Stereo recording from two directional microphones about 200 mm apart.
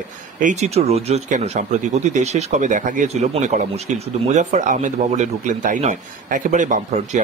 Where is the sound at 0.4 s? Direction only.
35° right (ahead or behind).